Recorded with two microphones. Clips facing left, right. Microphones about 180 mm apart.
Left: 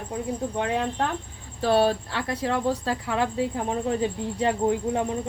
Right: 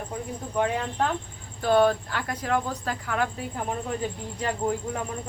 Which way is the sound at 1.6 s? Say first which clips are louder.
Even; 30° left (ahead or behind).